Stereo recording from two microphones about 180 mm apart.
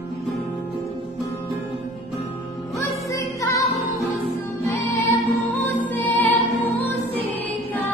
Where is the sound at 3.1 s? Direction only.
15° left (ahead or behind).